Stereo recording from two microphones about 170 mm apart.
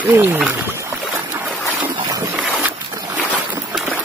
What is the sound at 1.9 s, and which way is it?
Boat, 20° right (ahead or behind).